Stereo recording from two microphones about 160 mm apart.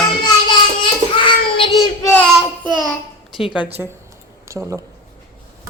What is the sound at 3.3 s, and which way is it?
Speech, centre (ahead or behind).